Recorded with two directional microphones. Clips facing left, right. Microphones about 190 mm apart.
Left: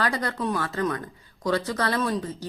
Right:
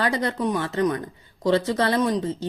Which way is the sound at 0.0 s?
20° right (ahead or behind).